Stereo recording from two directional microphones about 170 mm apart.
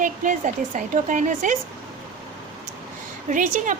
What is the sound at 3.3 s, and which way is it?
Speech, 50° right (ahead or behind).